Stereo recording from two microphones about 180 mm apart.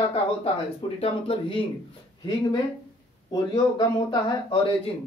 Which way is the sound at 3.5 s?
25° left (ahead or behind).